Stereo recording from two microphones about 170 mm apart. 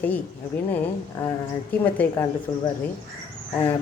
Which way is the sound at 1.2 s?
15° left (ahead or behind).